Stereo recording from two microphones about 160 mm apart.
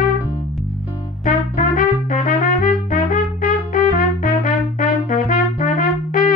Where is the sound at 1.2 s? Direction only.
55° left (ahead or behind).